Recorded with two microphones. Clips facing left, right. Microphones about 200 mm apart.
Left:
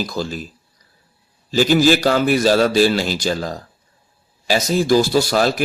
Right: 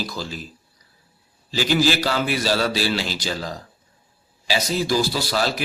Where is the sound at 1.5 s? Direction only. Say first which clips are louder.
Left 6 dB; 45° left (ahead or behind).